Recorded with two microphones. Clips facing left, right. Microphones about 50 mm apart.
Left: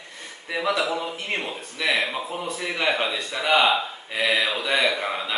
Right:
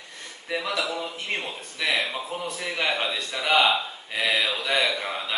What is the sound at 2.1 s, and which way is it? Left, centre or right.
A man's voice, centre.